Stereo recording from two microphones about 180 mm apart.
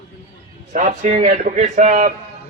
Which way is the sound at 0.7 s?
40° right (ahead or behind).